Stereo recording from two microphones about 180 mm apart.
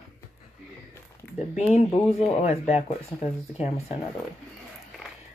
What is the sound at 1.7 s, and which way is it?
Speech, 35° left (ahead or behind).